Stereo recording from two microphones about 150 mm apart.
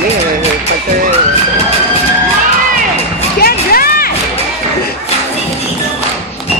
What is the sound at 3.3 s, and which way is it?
Music, 85° left.